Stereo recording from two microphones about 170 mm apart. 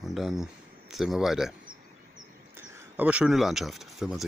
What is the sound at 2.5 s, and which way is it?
Speech, 10° right (ahead or behind).